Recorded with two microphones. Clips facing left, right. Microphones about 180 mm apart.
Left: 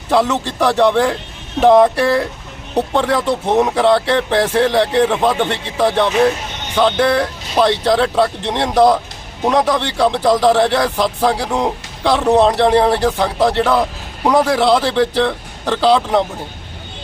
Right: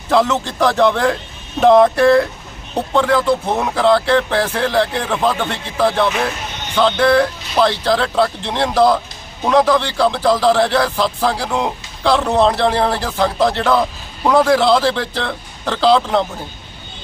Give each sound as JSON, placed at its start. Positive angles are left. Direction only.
{"t": 0.1, "sound": "speech", "side_deg": 10}